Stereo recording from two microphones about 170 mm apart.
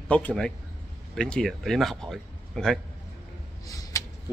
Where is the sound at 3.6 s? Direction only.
20° left (ahead or behind).